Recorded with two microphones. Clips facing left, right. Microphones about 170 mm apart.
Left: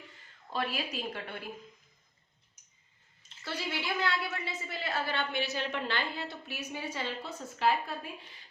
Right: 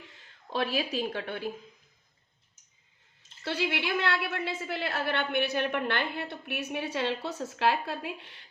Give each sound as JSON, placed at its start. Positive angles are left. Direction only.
{"t": 0.5, "sound": "speech", "side_deg": -80}
{"t": 3.4, "sound": "a woman's voice", "side_deg": -70}